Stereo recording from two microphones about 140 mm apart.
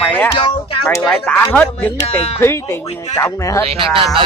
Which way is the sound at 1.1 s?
10° left (ahead or behind).